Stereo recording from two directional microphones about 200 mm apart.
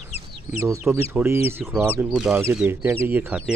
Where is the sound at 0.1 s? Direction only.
30° left (ahead or behind).